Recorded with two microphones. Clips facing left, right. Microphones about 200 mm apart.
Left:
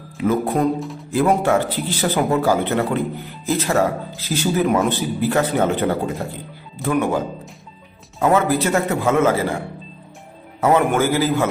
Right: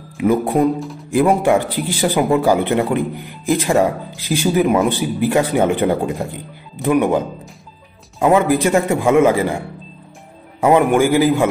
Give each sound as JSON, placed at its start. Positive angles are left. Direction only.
{"t": 0.2, "sound": "a man's voice", "side_deg": -15}
{"t": 0.7, "sound": "speech", "side_deg": 0}
{"t": 1.1, "sound": "a man's voice", "side_deg": -15}
{"t": 10.6, "sound": "a man's voice", "side_deg": -15}